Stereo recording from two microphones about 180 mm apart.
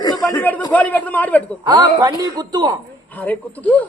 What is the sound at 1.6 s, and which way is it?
A man's voice, 20° right (ahead or behind).